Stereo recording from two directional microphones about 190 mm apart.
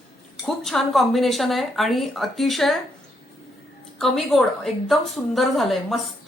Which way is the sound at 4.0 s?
Centre (ahead or behind).